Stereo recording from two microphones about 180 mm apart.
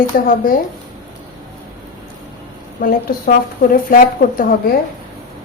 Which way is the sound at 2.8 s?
55° left (ahead or behind).